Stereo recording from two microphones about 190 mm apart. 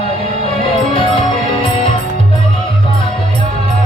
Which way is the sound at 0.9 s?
30° left (ahead or behind).